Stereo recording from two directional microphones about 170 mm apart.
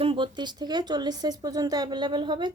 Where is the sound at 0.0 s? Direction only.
30° right (ahead or behind).